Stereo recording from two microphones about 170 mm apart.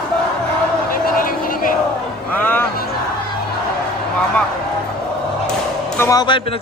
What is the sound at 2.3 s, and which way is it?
Speech, 10° left (ahead or behind).